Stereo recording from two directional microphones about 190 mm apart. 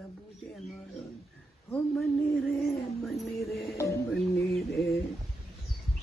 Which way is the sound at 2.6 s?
Centre (ahead or behind).